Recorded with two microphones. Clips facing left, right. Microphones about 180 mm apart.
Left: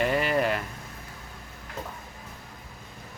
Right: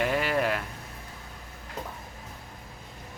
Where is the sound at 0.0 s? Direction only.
Centre (ahead or behind).